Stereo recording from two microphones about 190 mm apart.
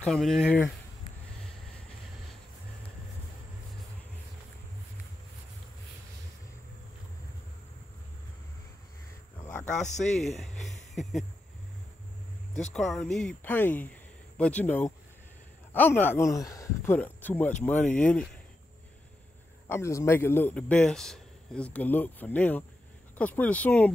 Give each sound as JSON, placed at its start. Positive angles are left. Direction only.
{"t": 0.0, "sound": "speech", "side_deg": 0}
{"t": 9.4, "sound": "cricket", "side_deg": 10}
{"t": 9.7, "sound": "speech", "side_deg": 40}
{"t": 10.4, "sound": "speech", "side_deg": 0}
{"t": 12.7, "sound": "a man's voice", "side_deg": 0}
{"t": 19.7, "sound": "a man's voice", "side_deg": 15}